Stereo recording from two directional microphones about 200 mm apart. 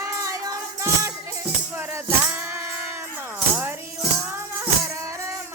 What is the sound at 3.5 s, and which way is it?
Music, 10° right (ahead or behind).